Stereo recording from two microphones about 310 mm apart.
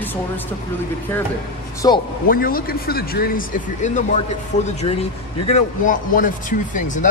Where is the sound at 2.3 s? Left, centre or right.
Left.